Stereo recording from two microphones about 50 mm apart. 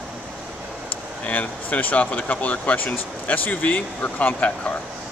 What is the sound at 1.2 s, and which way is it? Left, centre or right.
Speech, left.